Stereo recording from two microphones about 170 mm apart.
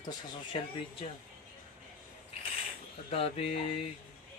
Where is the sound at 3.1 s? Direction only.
35° left (ahead or behind).